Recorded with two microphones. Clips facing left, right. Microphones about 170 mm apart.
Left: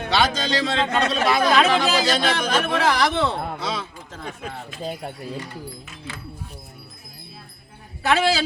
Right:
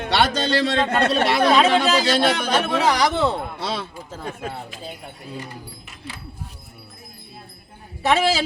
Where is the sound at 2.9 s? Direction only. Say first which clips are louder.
Right 2 dB; centre (ahead or behind).